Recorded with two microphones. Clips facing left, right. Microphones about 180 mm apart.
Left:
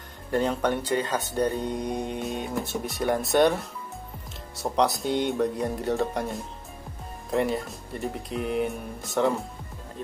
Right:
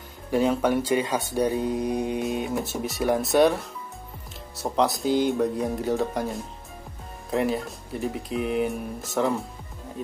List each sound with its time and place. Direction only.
0.3 s speech: 5° right (ahead or behind)
10.0 s music: 10° right (ahead or behind)